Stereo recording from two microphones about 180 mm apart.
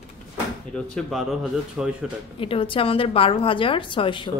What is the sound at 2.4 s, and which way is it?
A woman's voice, 30° left (ahead or behind).